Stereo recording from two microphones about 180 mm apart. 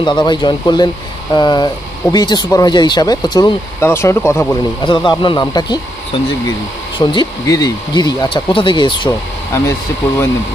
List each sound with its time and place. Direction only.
0.0 s speech: 25° left (ahead or behind)
4.8 s speech: 25° left (ahead or behind)